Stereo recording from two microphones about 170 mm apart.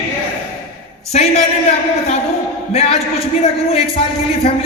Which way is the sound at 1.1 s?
40° left (ahead or behind).